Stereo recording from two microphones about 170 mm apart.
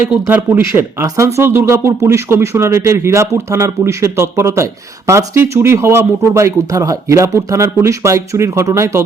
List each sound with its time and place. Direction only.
0.1 s speech: 10° right (ahead or behind)